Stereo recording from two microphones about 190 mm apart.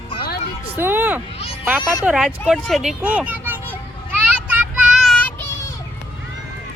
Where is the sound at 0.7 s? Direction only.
10° right (ahead or behind).